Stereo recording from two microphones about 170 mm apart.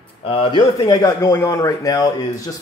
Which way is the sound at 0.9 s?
15° left (ahead or behind).